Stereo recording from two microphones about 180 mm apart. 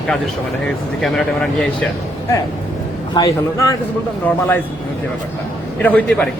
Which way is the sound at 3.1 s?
20° left (ahead or behind).